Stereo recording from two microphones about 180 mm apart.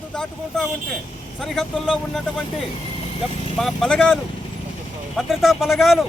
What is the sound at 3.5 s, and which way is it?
Speech, centre (ahead or behind).